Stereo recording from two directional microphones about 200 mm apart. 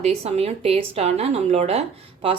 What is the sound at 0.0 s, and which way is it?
A woman's voice, 30° right (ahead or behind).